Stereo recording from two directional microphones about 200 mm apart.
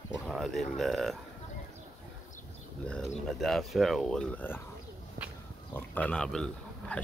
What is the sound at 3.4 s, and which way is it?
Speech, centre (ahead or behind).